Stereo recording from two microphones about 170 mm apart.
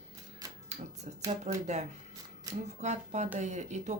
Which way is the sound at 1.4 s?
40° right (ahead or behind).